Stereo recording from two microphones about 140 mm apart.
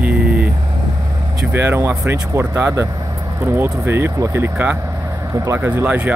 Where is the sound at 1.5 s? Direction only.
15° right (ahead or behind).